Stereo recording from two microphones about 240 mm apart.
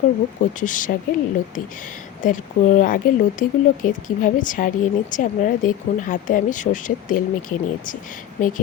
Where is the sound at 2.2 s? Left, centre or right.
Left.